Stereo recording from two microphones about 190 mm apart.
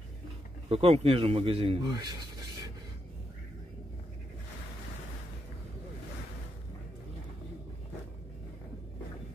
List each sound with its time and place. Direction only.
0.7 s a man's voice: 30° right (ahead or behind)